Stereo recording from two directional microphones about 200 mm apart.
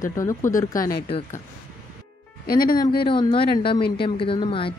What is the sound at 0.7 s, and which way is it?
Speech, 45° left (ahead or behind).